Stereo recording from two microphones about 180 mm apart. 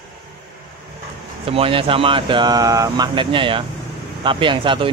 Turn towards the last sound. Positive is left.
turn(degrees=-25)  # may be behind; listen again after turning